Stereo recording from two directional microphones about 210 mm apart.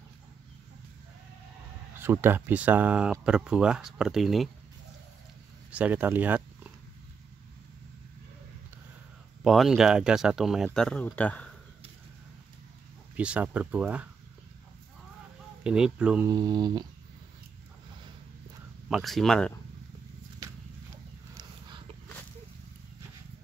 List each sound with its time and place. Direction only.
2.0 s speech: 10° right (ahead or behind)
5.7 s speech: 5° right (ahead or behind)
9.4 s speech: centre (ahead or behind)
13.1 s speech: 5° right (ahead or behind)
15.6 s speech: 5° right (ahead or behind)
16.3 s speech: 20° right (ahead or behind)
18.9 s speech: centre (ahead or behind)
21.4 s a sound: 20° right (ahead or behind)